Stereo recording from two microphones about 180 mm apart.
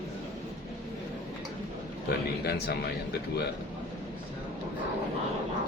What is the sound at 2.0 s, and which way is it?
A man's voice, 65° left (ahead or behind).